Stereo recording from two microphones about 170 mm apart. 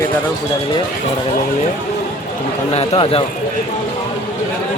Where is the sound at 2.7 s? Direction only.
35° left (ahead or behind).